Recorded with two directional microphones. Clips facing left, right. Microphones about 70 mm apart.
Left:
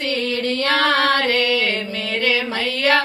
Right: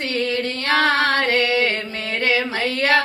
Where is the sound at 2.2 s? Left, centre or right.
Right.